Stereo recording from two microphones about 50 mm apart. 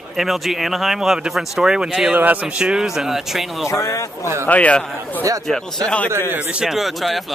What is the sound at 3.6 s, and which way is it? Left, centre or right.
Speech, left.